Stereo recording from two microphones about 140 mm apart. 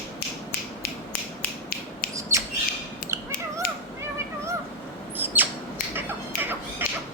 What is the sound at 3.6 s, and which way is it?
Cat, 90° left.